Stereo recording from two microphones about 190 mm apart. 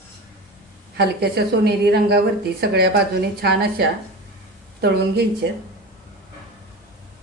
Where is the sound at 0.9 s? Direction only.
60° right (ahead or behind).